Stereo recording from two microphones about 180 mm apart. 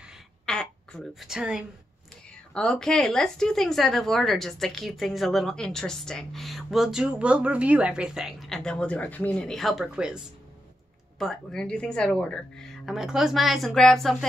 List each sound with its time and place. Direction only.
0.5 s a woman's voice: 5° left (ahead or behind)